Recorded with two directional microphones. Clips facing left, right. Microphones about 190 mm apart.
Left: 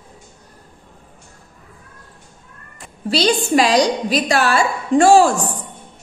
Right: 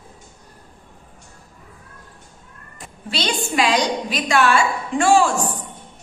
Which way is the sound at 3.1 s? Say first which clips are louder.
Left 8 dB; 35° left (ahead or behind).